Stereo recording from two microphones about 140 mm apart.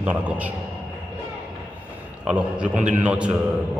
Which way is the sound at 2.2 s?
5° right (ahead or behind).